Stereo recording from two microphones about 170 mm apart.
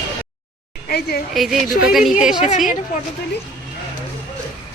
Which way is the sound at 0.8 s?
65° left (ahead or behind).